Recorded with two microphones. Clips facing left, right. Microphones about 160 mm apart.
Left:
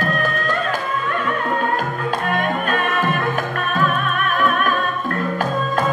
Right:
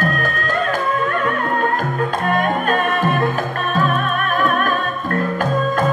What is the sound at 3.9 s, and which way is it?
Music, 40° right (ahead or behind).